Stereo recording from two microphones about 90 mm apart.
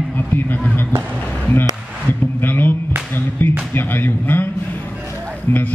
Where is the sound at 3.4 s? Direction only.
20° left (ahead or behind).